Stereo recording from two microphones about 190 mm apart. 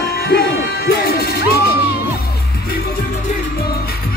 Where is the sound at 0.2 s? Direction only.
55° left (ahead or behind).